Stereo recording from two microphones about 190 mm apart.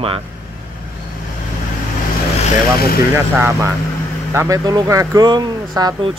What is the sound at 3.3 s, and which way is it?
Speech, 10° right (ahead or behind).